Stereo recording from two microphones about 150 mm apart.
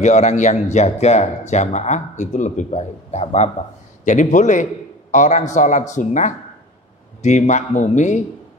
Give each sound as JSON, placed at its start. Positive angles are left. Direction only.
{"t": 0.0, "sound": "speech", "side_deg": 50}